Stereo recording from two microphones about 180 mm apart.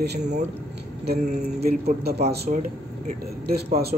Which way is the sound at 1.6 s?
60° right (ahead or behind).